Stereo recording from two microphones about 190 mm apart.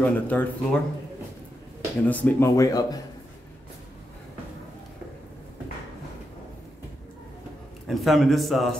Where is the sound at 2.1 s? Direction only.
10° left (ahead or behind).